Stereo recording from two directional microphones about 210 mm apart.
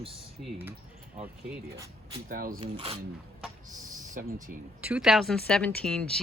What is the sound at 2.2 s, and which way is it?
Speech, 40° right (ahead or behind).